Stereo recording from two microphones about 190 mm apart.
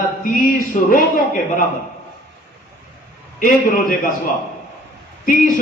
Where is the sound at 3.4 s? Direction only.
45° left (ahead or behind).